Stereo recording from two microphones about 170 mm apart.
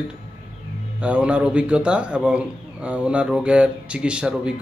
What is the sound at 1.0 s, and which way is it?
Speech, 5° right (ahead or behind).